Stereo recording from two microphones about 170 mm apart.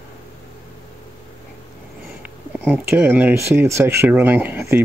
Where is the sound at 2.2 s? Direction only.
10° right (ahead or behind).